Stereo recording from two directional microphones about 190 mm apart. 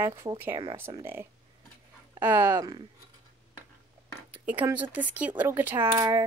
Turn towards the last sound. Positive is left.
turn(degrees=-15)  # may be behind; listen again after turning